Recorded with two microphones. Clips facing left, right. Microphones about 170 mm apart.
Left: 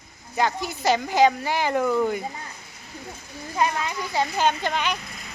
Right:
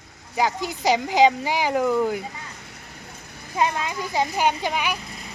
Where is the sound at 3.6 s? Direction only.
20° right (ahead or behind).